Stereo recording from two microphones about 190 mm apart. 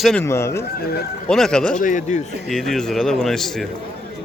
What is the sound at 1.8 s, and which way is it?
Speech, 40° left (ahead or behind).